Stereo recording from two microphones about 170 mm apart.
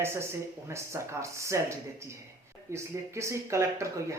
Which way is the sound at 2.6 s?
15° right (ahead or behind).